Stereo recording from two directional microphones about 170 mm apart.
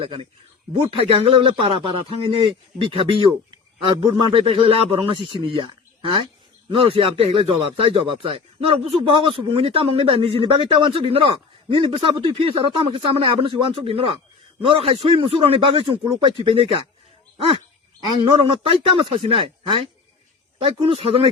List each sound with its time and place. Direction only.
0.0 s speech: 35° right (ahead or behind)
2.8 s speech: 30° right (ahead or behind)